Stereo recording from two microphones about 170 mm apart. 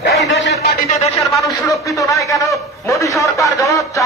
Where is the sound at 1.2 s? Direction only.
20° left (ahead or behind).